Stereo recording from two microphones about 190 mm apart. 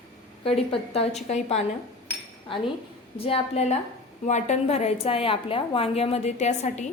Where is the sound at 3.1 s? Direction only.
30° left (ahead or behind).